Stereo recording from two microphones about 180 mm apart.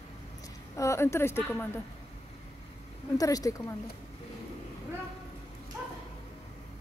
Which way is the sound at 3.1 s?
20° left (ahead or behind).